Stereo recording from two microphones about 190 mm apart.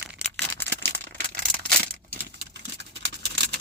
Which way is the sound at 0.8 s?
60° right (ahead or behind).